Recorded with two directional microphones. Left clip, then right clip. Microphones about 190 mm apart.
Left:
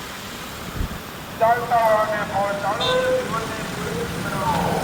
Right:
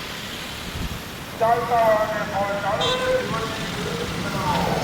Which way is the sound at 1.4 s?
35° left (ahead or behind).